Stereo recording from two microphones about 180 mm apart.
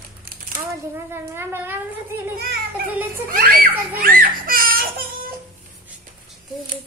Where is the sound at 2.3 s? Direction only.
60° right (ahead or behind).